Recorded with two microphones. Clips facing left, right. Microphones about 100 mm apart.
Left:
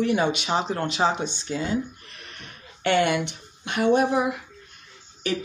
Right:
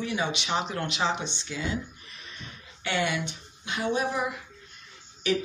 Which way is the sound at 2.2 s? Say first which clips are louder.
Left 1 dB; 65° left (ahead or behind).